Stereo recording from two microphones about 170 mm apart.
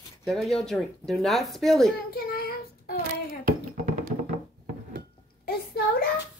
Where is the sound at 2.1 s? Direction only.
65° left (ahead or behind).